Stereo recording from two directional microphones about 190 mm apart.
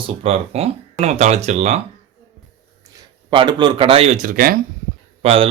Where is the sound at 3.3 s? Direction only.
25° right (ahead or behind); by 4.5 s 45° right (ahead or behind).